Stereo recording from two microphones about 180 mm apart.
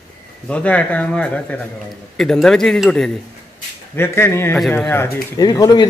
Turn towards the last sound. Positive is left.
turn(degrees=20)  # may be behind; listen again after turning